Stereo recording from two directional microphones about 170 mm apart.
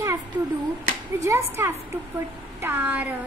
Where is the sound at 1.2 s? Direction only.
15° right (ahead or behind).